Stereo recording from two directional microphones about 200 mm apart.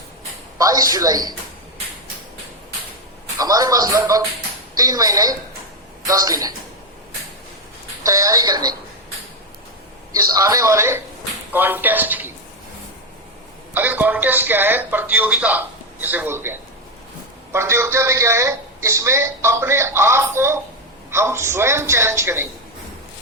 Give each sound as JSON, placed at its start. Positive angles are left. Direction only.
{"t": 0.6, "sound": "a man's voice", "side_deg": -20}
{"t": 3.3, "sound": "a man's voice", "side_deg": -15}
{"t": 8.0, "sound": "a man's voice", "side_deg": -15}
{"t": 10.2, "sound": "a man's voice", "side_deg": -15}
{"t": 13.7, "sound": "a man's voice", "side_deg": -10}